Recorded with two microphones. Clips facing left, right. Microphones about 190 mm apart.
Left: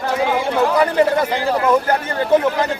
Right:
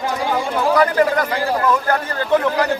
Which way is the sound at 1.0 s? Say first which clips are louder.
Left 1 dB; 25° left (ahead or behind).